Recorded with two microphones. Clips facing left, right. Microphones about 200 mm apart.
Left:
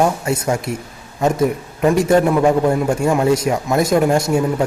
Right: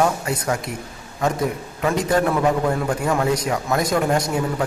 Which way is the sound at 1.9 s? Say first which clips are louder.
Left 6 dB; 20° left (ahead or behind).